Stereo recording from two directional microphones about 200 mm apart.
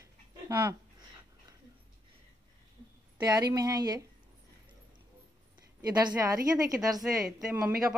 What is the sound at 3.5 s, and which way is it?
Speech, 20° right (ahead or behind).